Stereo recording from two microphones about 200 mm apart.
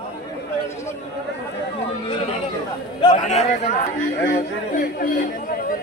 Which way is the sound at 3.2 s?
35° left (ahead or behind).